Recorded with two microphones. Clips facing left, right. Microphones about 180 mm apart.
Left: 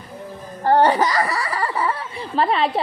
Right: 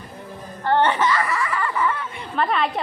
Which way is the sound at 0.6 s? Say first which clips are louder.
Left 3 dB; 35° left (ahead or behind).